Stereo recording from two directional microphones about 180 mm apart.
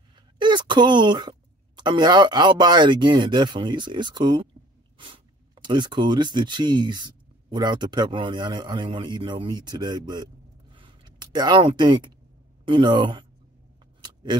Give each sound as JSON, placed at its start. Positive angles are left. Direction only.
{"t": 0.4, "sound": "speech", "side_deg": -25}
{"t": 10.7, "sound": "a sound", "side_deg": -25}
{"t": 12.6, "sound": "speech", "side_deg": -25}